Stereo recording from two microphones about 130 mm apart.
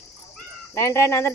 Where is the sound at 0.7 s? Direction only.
20° left (ahead or behind).